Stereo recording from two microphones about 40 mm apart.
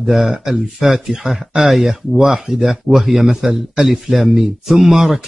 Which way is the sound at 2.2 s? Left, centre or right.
Centre.